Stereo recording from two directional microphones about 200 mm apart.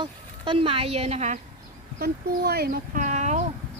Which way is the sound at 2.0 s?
50° right (ahead or behind).